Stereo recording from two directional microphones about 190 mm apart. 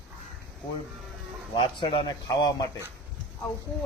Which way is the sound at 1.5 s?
25° left (ahead or behind).